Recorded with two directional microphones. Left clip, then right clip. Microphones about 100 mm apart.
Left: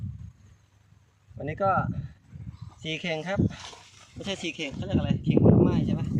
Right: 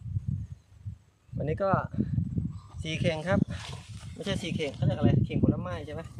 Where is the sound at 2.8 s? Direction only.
35° right (ahead or behind).